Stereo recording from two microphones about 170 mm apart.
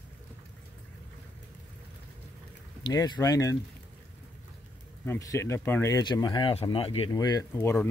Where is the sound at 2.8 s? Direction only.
20° left (ahead or behind).